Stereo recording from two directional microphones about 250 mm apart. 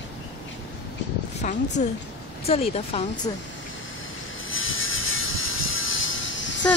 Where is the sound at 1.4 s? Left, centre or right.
Left.